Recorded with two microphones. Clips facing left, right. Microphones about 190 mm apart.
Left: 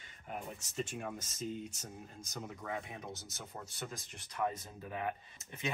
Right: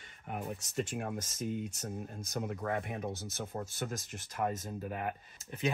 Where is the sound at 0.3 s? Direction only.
65° right (ahead or behind).